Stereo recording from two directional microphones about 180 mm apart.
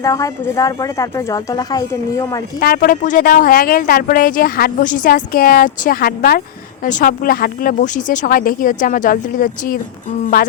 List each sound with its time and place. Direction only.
0.0 s speech: 20° left (ahead or behind)
2.6 s speech: 55° left (ahead or behind)